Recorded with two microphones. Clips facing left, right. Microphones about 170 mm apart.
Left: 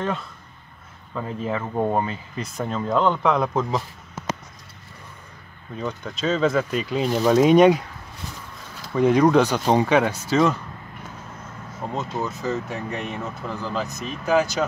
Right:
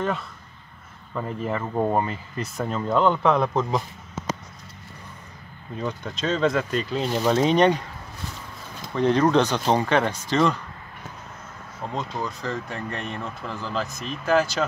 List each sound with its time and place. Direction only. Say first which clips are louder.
1.1 s speech: left 1 dB; centre (ahead or behind)
5.8 s speech: left 1 dB; centre (ahead or behind)
8.9 s speech: left 3 dB; 10° left (ahead or behind)
11.9 s speech: left 2 dB; 5° left (ahead or behind)
13.5 s speech: left 1 dB; 15° left (ahead or behind)
13.9 s speech: left 1 dB; centre (ahead or behind)